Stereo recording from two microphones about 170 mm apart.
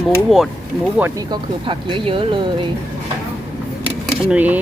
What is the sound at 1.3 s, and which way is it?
Speech, 30° right (ahead or behind).